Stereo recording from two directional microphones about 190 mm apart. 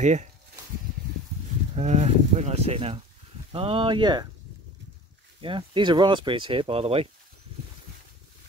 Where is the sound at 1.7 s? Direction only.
35° right (ahead or behind).